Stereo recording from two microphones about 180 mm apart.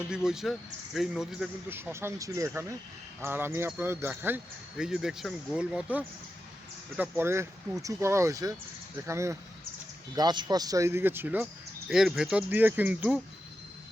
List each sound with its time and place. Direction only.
0.1 s speech: 5° right (ahead or behind)
1.7 s speech: 15° right (ahead or behind)